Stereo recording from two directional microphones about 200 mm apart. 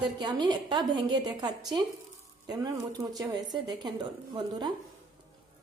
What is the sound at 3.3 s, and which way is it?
Speech, 20° right (ahead or behind).